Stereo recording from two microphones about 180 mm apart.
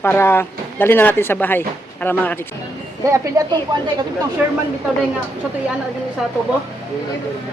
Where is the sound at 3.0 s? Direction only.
15° right (ahead or behind).